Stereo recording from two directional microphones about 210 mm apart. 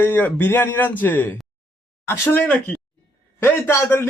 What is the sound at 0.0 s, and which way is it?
A man's voice, 10° left (ahead or behind).